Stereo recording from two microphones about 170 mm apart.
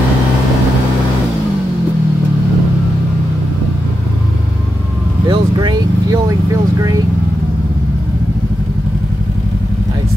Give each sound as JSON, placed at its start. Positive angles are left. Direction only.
{"t": 5.3, "sound": "vehicle", "side_deg": -25}